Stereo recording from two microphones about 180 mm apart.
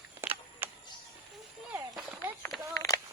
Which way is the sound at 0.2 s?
10° right (ahead or behind).